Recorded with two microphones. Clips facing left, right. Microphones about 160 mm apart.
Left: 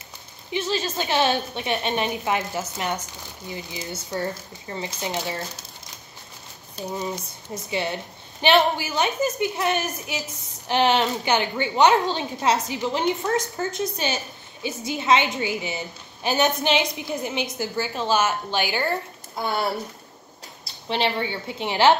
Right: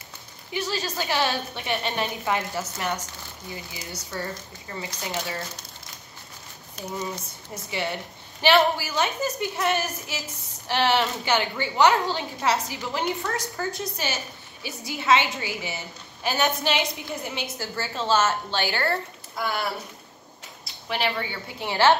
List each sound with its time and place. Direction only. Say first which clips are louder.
0.5 s a woman's voice: left 3 dB; 20° left (ahead or behind)
6.8 s a woman's voice: left 3 dB; 30° left (ahead or behind)
19.3 s a woman's voice: left 3 dB; 25° left (ahead or behind)
20.9 s a woman's voice: left 3 dB; 25° left (ahead or behind)